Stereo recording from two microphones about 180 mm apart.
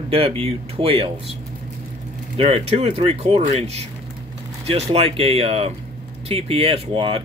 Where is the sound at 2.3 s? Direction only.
35° right (ahead or behind).